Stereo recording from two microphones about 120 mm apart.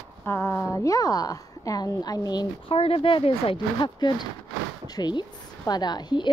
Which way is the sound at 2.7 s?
55° left (ahead or behind).